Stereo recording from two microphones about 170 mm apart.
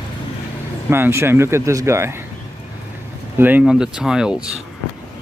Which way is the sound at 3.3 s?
10° right (ahead or behind).